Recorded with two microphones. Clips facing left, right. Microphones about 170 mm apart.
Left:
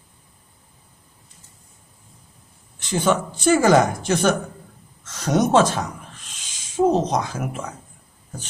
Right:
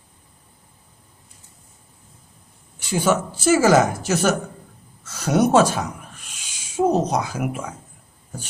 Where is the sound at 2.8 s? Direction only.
10° right (ahead or behind).